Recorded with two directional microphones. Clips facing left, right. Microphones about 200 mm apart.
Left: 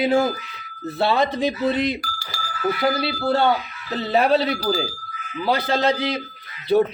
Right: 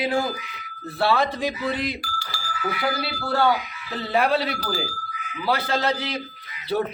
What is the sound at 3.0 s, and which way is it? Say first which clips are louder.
A man's voice: left 3 dB; 25° left (ahead or behind).